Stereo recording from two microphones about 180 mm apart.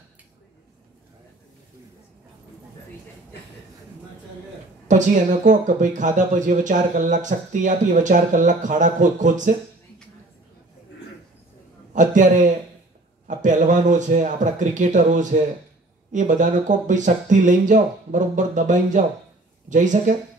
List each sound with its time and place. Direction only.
4.8 s speech: 45° right (ahead or behind)
11.9 s a man's voice: 45° right (ahead or behind)